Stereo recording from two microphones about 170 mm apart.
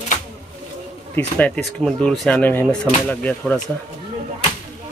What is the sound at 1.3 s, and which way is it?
Speech, 5° left (ahead or behind).